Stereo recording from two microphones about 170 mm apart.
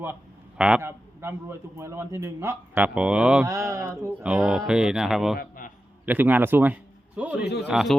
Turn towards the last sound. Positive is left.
turn(degrees=-5)  # may be behind; listen again after turning